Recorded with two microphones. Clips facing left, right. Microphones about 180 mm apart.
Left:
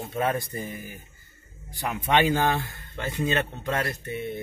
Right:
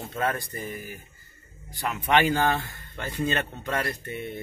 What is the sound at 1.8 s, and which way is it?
Speech, 15° left (ahead or behind).